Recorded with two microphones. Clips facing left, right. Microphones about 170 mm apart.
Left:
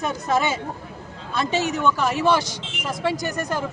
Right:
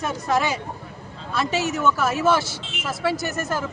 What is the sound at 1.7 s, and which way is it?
Speech, centre (ahead or behind).